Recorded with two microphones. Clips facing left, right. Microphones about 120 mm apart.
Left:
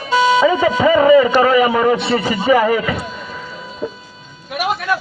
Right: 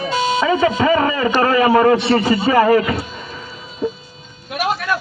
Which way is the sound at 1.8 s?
10° left (ahead or behind).